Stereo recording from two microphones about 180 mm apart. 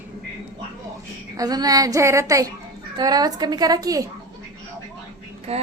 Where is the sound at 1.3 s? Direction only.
20° right (ahead or behind).